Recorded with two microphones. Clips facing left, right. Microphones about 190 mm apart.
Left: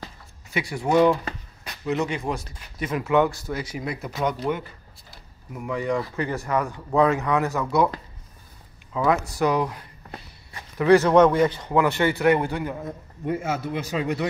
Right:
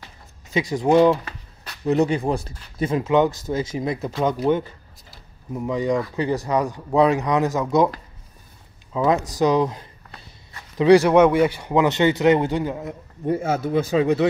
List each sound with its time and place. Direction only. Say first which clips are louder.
0.5 s speech: right 5 dB; 20° right (ahead or behind)
1.9 s speech: right 6 dB; 35° right (ahead or behind)
5.5 s speech: right 4 dB; 20° right (ahead or behind)
8.9 s speech: right 2 dB; 20° right (ahead or behind)
13.2 s speech: right 4 dB; 35° right (ahead or behind)